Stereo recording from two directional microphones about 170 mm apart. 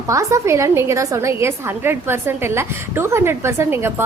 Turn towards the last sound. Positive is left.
turn(degrees=-15)  # may be behind; listen again after turning